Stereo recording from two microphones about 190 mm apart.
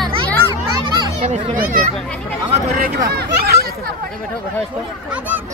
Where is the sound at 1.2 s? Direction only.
45° right (ahead or behind).